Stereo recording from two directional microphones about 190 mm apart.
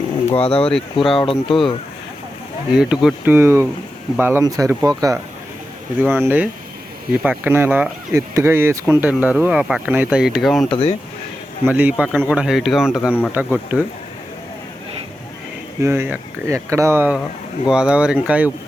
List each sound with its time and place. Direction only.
0.3 s speech: 30° left (ahead or behind)
2.7 s speech: 5° right (ahead or behind)
10.7 s speech: 30° left (ahead or behind)
11.6 s a man's voice: 10° right (ahead or behind)
15.8 s speech: 15° right (ahead or behind)